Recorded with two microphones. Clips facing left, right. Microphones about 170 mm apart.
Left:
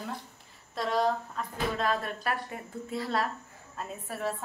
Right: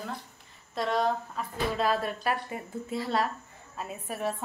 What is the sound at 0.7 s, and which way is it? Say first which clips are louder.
A woman's voice: even; centre (ahead or behind).